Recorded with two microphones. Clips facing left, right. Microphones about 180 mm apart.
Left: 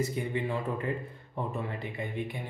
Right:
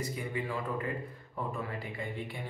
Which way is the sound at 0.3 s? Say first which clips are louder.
Left 4 dB; 25° left (ahead or behind).